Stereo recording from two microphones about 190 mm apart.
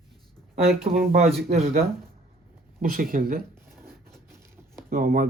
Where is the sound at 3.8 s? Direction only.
15° right (ahead or behind).